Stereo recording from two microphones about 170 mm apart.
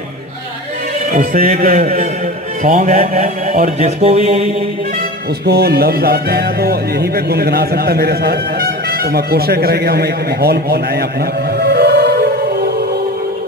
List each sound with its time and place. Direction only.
1.1 s music: 50° right (ahead or behind)
2.6 s mantra: 45° right (ahead or behind)
5.4 s speech: 70° right (ahead or behind)
11.5 s music: 75° right (ahead or behind)